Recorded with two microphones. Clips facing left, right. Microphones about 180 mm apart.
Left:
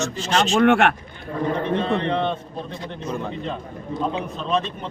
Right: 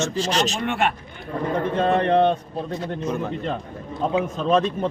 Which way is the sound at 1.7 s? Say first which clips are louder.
Right 4 dB; 45° right (ahead or behind).